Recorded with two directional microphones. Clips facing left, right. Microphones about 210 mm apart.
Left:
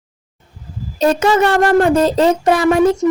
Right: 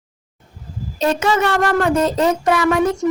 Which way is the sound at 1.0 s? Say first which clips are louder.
Left 4 dB; 40° left (ahead or behind).